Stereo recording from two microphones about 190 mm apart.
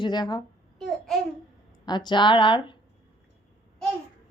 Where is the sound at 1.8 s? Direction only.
20° left (ahead or behind).